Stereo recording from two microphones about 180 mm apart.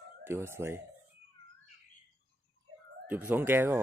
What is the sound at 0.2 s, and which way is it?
Speech, 15° right (ahead or behind).